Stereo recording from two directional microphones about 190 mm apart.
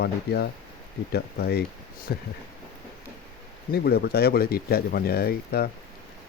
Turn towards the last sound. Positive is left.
turn(degrees=55)  # may be behind; listen again after turning